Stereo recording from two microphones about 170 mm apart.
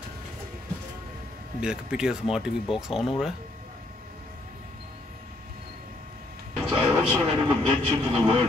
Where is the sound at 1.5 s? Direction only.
5° right (ahead or behind).